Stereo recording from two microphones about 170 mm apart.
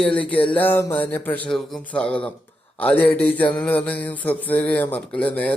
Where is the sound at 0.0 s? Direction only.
10° left (ahead or behind).